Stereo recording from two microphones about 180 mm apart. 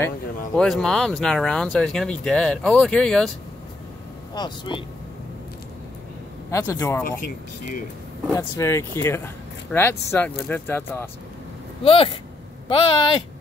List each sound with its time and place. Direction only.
0.6 s speech: centre (ahead or behind)
4.3 s speech: 25° left (ahead or behind)
6.5 s speech: 15° left (ahead or behind)
8.3 s speech: 15° left (ahead or behind)
11.8 s speech: 30° left (ahead or behind)